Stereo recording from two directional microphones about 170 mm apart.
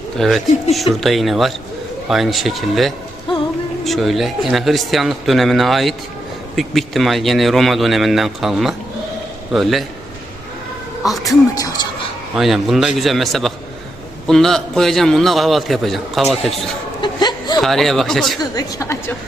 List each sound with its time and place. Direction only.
0.2 s speech: centre (ahead or behind)
11.5 s a woman's voice: 20° left (ahead or behind)
12.4 s speech: centre (ahead or behind)
17.0 s chuckle: 25° left (ahead or behind)
17.6 s speech: centre (ahead or behind)
18.3 s a woman's voice: 20° left (ahead or behind)